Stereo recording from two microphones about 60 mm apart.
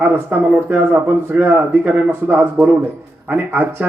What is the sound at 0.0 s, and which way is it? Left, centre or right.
Speech, right.